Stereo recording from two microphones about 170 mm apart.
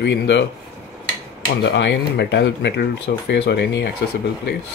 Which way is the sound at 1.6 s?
90° left.